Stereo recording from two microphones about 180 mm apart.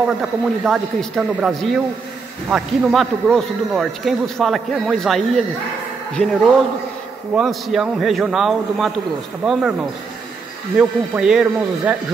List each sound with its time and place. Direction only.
0.2 s a man's voice: centre (ahead or behind)
10.8 s a man's voice: 5° right (ahead or behind)